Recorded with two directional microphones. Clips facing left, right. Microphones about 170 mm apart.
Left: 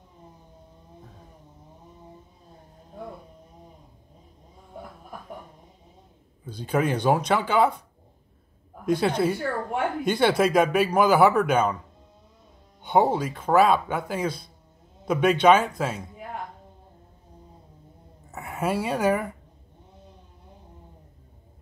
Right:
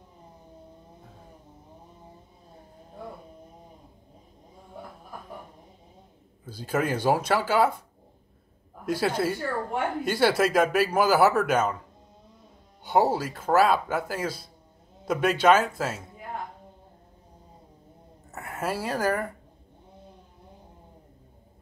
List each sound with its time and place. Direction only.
6.4 s speech: 5° right (ahead or behind)
8.8 s speech: 5° right (ahead or behind)
12.8 s speech: 5° right (ahead or behind)
18.3 s speech: centre (ahead or behind)